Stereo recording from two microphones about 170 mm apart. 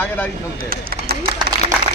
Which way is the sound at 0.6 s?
60° right (ahead or behind).